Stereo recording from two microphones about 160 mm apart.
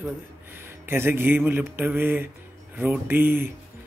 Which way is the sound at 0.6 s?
15° right (ahead or behind).